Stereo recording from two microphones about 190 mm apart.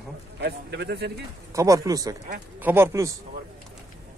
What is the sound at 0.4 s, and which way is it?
Speech, 65° right (ahead or behind).